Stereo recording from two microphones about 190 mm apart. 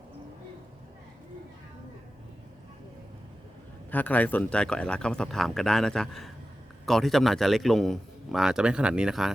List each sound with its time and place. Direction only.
3.9 s a man's voice: 10° left (ahead or behind)